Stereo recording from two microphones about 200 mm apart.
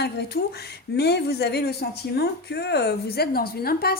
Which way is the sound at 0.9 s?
55° left (ahead or behind).